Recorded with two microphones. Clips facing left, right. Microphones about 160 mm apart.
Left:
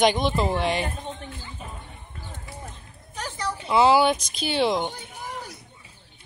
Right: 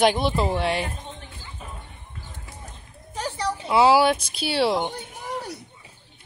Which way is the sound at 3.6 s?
5° right (ahead or behind).